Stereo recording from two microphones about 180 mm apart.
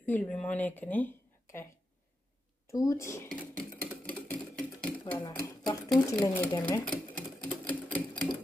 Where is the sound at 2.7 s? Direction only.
20° left (ahead or behind).